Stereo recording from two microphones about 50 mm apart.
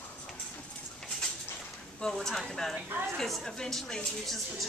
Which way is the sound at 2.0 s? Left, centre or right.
Centre.